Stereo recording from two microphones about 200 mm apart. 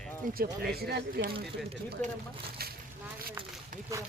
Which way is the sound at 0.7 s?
55° right (ahead or behind).